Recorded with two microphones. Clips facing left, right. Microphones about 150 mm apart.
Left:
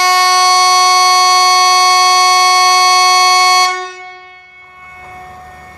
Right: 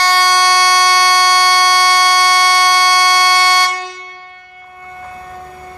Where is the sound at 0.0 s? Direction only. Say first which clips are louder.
Left 2 dB; 20° left (ahead or behind).